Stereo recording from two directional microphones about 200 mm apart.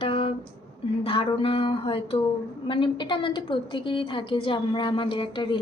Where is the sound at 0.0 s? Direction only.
25° left (ahead or behind).